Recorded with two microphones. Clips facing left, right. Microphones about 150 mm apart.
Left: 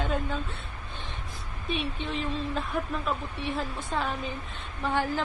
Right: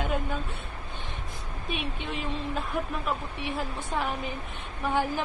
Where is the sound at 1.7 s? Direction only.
15° right (ahead or behind).